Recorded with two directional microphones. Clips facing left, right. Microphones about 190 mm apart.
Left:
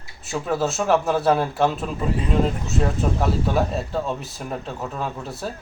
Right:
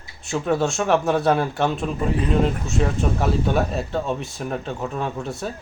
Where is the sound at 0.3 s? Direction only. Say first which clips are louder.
Right 2 dB; centre (ahead or behind).